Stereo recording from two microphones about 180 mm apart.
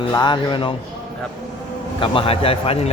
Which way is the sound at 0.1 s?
25° left (ahead or behind).